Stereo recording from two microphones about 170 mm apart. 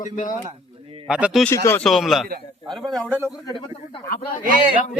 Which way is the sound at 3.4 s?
30° left (ahead or behind).